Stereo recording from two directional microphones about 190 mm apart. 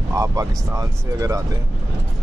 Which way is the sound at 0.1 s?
15° right (ahead or behind).